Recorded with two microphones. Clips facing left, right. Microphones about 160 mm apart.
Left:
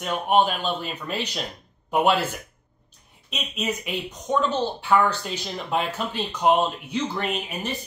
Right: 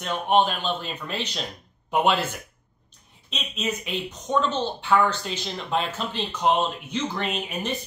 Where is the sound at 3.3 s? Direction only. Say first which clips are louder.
Left 1 dB; 10° left (ahead or behind).